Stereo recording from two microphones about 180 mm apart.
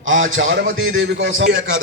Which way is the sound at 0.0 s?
90° right.